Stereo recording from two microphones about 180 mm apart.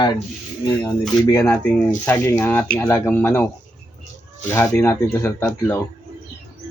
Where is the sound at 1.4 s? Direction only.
5° left (ahead or behind).